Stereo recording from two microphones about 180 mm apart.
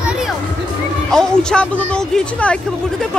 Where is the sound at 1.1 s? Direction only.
5° left (ahead or behind).